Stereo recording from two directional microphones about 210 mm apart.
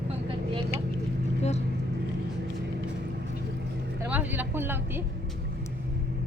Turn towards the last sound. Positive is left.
turn(degrees=-10)  # may be behind; listen again after turning